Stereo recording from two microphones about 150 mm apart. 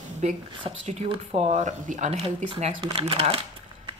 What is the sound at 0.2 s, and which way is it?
Speech, 50° right (ahead or behind).